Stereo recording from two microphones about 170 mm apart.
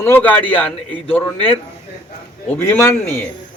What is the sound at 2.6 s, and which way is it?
Speech, 15° left (ahead or behind).